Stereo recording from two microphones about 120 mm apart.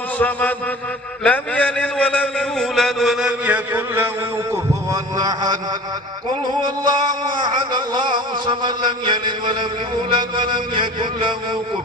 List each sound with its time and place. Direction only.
0.2 s a sound: 15° left (ahead or behind)
1.2 s a man's voice: 10° left (ahead or behind); by 4.1 s 15° right (ahead or behind)
4.9 s music: 35° right (ahead or behind)
6.8 s music: 35° right (ahead or behind)